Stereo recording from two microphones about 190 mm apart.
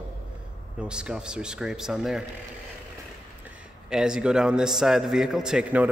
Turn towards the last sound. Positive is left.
turn(degrees=-5)  # may be behind; listen again after turning